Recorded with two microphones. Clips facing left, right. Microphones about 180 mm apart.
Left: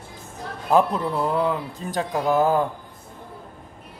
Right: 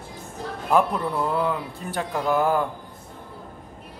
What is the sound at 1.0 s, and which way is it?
Speech, 20° left (ahead or behind).